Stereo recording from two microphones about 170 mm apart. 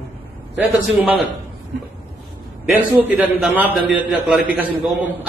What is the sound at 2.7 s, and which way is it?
A man's voice, 10° right (ahead or behind).